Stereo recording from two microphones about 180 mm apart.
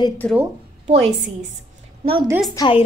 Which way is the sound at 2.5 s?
25° left (ahead or behind).